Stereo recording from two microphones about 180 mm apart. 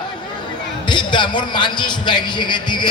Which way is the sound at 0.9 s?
25° left (ahead or behind).